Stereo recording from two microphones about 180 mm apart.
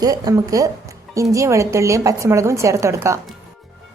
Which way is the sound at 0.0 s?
20° right (ahead or behind).